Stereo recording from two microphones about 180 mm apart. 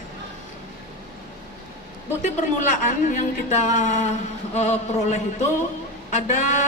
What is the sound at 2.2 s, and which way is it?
A woman's voice, 45° left (ahead or behind).